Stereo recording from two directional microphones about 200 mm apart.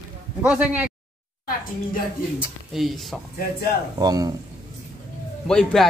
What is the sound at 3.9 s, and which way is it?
Speech, 20° right (ahead or behind).